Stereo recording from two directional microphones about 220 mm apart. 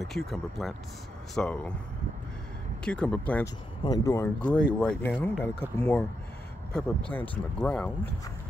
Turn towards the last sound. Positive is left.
turn(degrees=5)  # may be behind; listen again after turning